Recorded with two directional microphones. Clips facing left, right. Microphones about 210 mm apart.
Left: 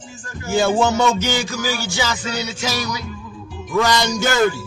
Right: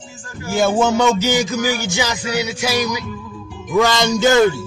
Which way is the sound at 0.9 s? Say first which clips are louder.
Right 3 dB; 5° right (ahead or behind).